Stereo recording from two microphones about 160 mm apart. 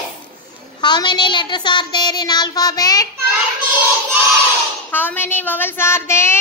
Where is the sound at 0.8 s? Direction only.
30° left (ahead or behind).